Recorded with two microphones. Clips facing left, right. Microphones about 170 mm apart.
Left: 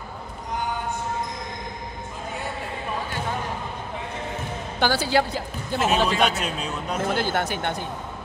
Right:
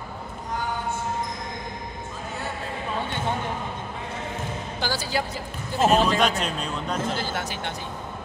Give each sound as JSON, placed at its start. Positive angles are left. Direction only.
{"t": 4.7, "sound": "speech", "side_deg": 65}
{"t": 5.9, "sound": "speech", "side_deg": 5}
{"t": 7.1, "sound": "speech", "side_deg": 55}